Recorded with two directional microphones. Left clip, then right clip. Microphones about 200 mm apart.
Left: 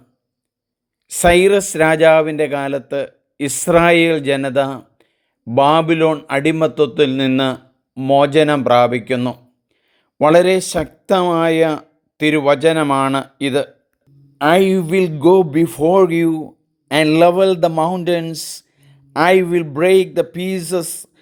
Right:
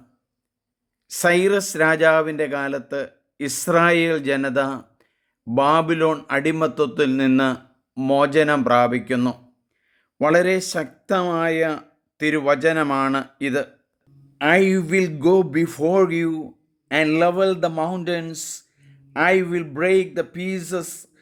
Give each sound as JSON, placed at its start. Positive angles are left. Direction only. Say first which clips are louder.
{"t": 1.1, "sound": "speech", "louder": "left 6 dB", "side_deg": 15}
{"t": 9.9, "sound": "a sound", "louder": "left 6 dB", "side_deg": 20}
{"t": 10.7, "sound": "a man's voice", "louder": "left 6 dB", "side_deg": 20}